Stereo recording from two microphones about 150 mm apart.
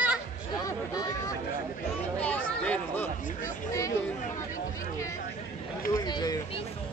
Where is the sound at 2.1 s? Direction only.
10° left (ahead or behind).